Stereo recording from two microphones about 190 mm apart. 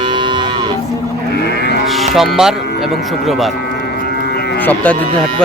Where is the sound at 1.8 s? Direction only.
Centre (ahead or behind).